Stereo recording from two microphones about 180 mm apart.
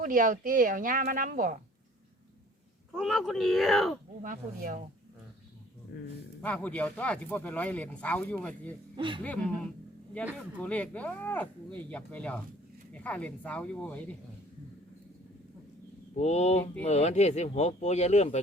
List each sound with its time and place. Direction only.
0.0 s speech: 45° right (ahead or behind)
2.9 s speech: centre (ahead or behind)
4.2 s speech: 50° right (ahead or behind)
6.4 s speech: 10° left (ahead or behind)
9.0 s speech: 25° right (ahead or behind)
9.2 s speech: 5° left (ahead or behind)
16.1 s speech: 40° left (ahead or behind)